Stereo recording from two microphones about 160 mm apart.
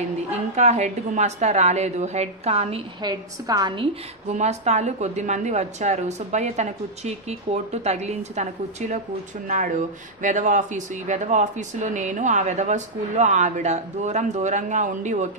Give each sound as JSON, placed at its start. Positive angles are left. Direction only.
{"t": 0.3, "sound": "speech", "side_deg": -45}
{"t": 3.0, "sound": "a woman's voice", "side_deg": -25}
{"t": 4.3, "sound": "speech", "side_deg": -45}